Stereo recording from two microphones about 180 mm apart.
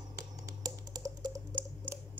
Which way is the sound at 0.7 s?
20° right (ahead or behind).